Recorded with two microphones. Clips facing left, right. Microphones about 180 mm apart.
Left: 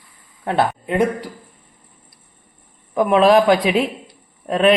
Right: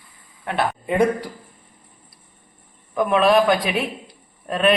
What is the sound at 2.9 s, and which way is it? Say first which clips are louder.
Speech: left 3 dB; 25° left (ahead or behind).